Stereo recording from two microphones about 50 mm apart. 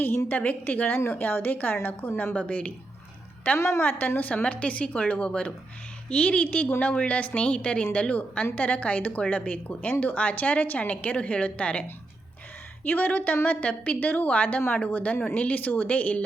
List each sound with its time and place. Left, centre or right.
0.3 s a woman's voice: left
2.5 s a woman's voice: left
3.8 s a woman's voice: left
12.8 s a woman's voice: left